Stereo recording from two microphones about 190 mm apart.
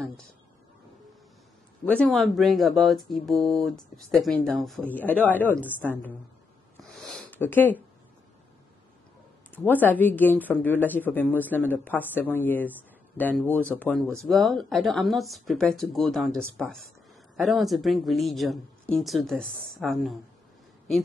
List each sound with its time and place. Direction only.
1.9 s a woman's voice: 5° left (ahead or behind)
6.8 s sniff: centre (ahead or behind)
9.5 s a woman's voice: 10° left (ahead or behind)